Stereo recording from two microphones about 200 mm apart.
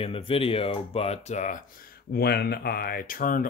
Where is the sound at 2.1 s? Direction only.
55° left (ahead or behind).